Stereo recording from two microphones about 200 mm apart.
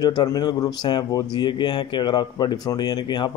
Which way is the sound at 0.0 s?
20° left (ahead or behind).